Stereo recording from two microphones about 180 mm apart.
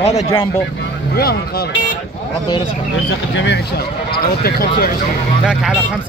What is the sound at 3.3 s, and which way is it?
Speech, 75° left (ahead or behind).